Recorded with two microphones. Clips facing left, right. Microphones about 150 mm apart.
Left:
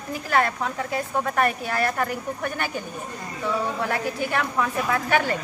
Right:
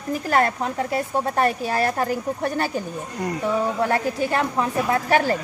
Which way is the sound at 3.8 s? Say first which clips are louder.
Right 4 dB; 35° right (ahead or behind).